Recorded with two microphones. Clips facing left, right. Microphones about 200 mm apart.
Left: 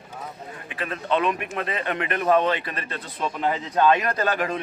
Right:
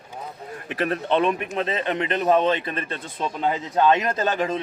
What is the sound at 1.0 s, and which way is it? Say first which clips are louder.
Speech: even; 30° right (ahead or behind).